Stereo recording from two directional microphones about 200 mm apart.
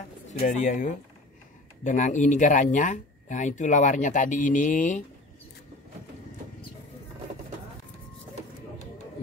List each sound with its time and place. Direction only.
0.3 s speech: 35° left (ahead or behind)